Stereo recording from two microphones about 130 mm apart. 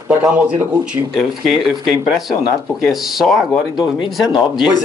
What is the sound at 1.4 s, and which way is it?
Speech, centre (ahead or behind).